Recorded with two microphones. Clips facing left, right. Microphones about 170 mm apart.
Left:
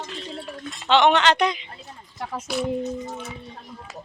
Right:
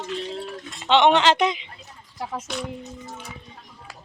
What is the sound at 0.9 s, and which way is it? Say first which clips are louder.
Speech: right 1 dB; 25° right (ahead or behind).